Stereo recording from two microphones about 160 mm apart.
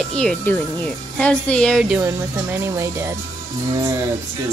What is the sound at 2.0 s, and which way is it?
Speech, 15° right (ahead or behind).